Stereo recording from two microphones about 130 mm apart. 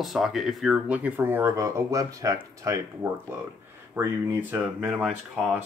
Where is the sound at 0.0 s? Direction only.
Centre (ahead or behind).